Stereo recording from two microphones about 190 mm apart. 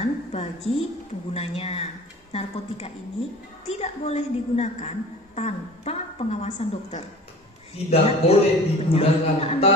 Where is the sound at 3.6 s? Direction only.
30° left (ahead or behind).